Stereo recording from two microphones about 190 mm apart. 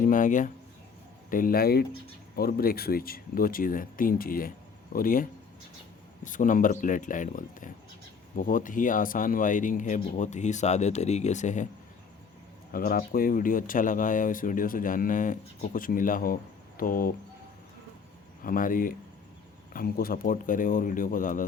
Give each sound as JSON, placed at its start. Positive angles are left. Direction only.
{"t": 0.0, "sound": "speech", "side_deg": 45}
{"t": 12.7, "sound": "speech", "side_deg": 50}
{"t": 18.4, "sound": "speech", "side_deg": 45}